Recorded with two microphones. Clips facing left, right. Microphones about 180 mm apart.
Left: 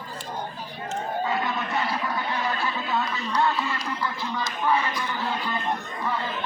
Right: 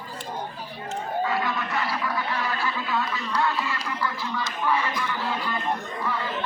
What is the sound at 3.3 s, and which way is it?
Music, 25° left (ahead or behind).